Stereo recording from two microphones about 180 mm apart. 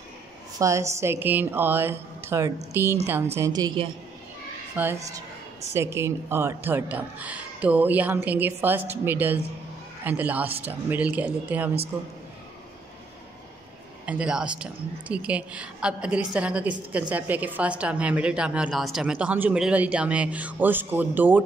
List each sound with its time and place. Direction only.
0.6 s a woman's voice: 15° right (ahead or behind)
4.8 s a woman's voice: 10° right (ahead or behind)
14.0 s a woman's voice: 5° right (ahead or behind)